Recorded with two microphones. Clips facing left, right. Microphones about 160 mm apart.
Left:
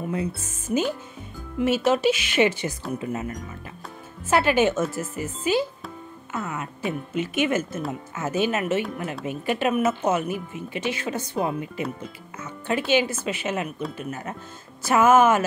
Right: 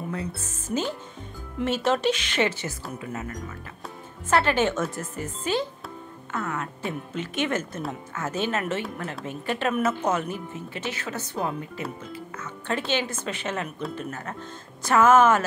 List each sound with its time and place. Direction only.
0.7 s a woman's voice: 10° left (ahead or behind)
4.3 s a woman's voice: 10° left (ahead or behind)